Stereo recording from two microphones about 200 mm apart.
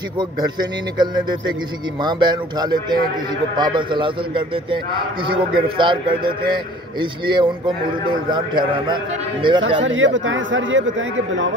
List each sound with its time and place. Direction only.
0.2 s a man's voice: 20° right (ahead or behind)
9.8 s a man's voice: 70° right (ahead or behind)